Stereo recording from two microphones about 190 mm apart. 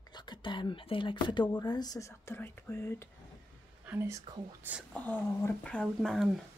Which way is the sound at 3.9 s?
15° right (ahead or behind).